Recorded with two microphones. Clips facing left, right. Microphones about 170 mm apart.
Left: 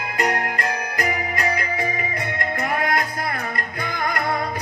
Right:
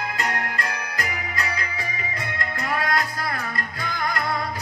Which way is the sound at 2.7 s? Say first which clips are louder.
Left 1 dB; 50° left (ahead or behind).